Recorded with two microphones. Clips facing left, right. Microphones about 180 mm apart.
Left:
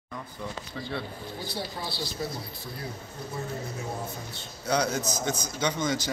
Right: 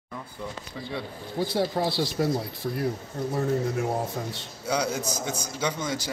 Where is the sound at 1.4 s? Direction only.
90° right.